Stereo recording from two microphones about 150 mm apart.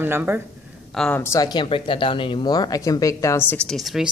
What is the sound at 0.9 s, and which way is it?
Speech, 10° left (ahead or behind).